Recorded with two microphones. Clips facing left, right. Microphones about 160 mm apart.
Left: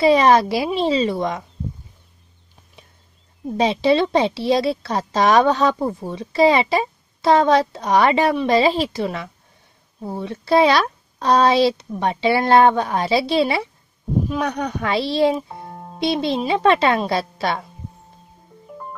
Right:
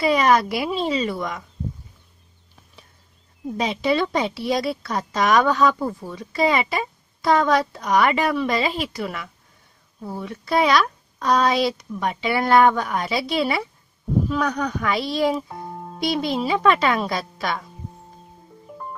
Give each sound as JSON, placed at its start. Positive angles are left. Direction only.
{"t": 0.0, "sound": "speech", "side_deg": 30}
{"t": 3.5, "sound": "a woman's voice", "side_deg": 30}